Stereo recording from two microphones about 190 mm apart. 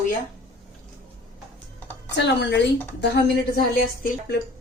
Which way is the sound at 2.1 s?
65° left (ahead or behind).